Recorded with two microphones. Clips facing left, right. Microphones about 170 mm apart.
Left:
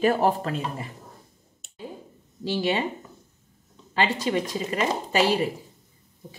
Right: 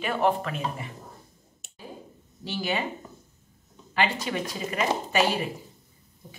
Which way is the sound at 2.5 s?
30° left (ahead or behind).